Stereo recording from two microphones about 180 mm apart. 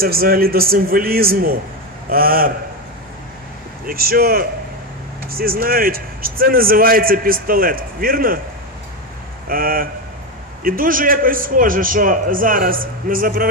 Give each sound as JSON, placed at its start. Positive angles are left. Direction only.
{"t": 0.0, "sound": "a man's voice", "side_deg": -55}
{"t": 3.8, "sound": "a man's voice", "side_deg": -55}
{"t": 9.5, "sound": "speech", "side_deg": -55}